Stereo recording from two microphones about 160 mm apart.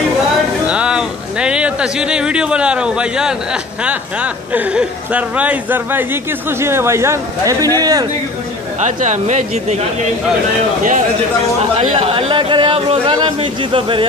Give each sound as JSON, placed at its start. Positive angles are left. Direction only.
{"t": 0.7, "sound": "a sound", "side_deg": -5}
{"t": 3.8, "sound": "a man's voice", "side_deg": -10}
{"t": 8.8, "sound": "speech", "side_deg": -50}
{"t": 11.7, "sound": "speech", "side_deg": -35}